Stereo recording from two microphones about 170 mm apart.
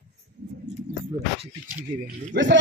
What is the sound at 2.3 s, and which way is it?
Speech, 90° right.